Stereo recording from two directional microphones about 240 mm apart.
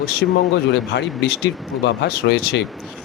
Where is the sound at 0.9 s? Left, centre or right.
Left.